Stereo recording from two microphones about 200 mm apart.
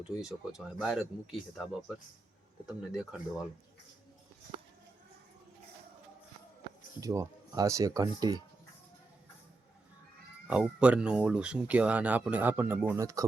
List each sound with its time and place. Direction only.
0.2 s speech: centre (ahead or behind)
7.0 s speech: 15° right (ahead or behind)
10.4 s speech: 5° right (ahead or behind)